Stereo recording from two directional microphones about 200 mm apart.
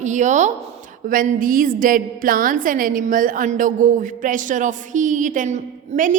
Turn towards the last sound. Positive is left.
turn(degrees=-40)  # may be behind; listen again after turning